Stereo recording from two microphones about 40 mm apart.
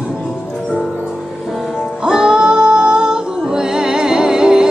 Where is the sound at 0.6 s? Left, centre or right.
Centre.